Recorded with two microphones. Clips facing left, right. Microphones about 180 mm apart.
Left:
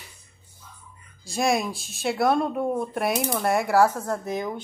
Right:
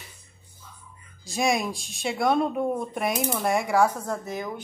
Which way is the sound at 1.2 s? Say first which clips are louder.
Left 1 dB; centre (ahead or behind).